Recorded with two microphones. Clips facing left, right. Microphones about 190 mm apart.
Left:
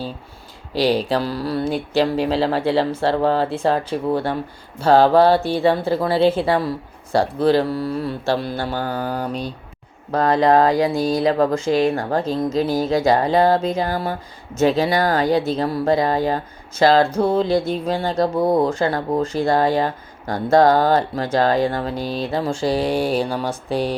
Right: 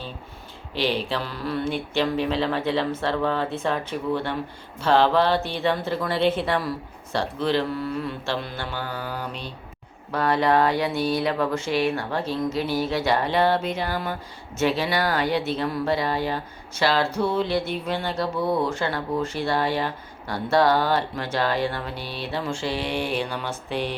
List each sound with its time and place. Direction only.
0.7 s speech: 40° left (ahead or behind)